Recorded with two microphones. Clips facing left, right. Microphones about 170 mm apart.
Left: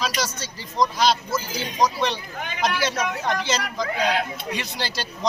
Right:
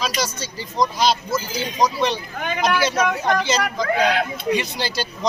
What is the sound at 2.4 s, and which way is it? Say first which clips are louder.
Speech: right 7 dB; 55° right (ahead or behind).